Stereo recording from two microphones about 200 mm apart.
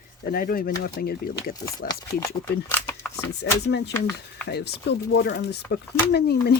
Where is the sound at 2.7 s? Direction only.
10° left (ahead or behind).